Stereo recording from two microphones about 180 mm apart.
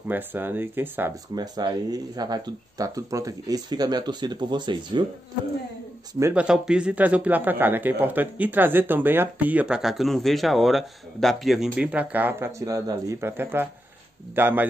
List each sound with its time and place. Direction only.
0.1 s speech: 10° right (ahead or behind)
1.3 s speech: 25° right (ahead or behind)
6.1 s speech: 15° right (ahead or behind)
6.4 s speech: 5° right (ahead or behind)